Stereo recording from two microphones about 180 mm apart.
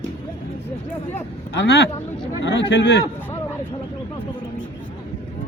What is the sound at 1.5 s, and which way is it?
Speech, 75° left (ahead or behind).